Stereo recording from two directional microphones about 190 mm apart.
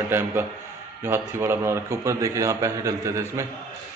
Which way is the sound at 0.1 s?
10° right (ahead or behind).